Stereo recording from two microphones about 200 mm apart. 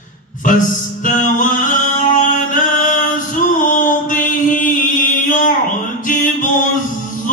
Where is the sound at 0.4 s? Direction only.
40° left (ahead or behind).